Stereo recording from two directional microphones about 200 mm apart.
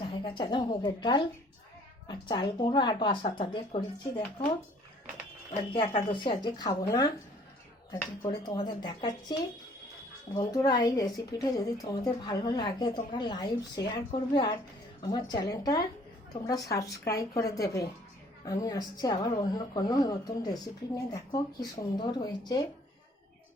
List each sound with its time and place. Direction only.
0.0 s a woman's voice: 25° left (ahead or behind)
5.7 s a woman's voice: 25° left (ahead or behind)
10.3 s a woman's voice: 20° left (ahead or behind)